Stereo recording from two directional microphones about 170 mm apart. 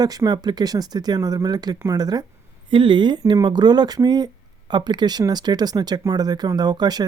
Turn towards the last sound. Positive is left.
turn(degrees=-25)  # may be behind; listen again after turning